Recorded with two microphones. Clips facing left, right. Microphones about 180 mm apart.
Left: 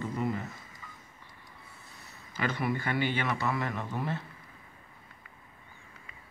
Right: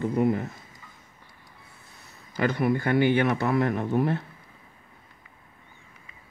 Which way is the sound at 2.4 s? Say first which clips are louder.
Right 7 dB; 50° right (ahead or behind).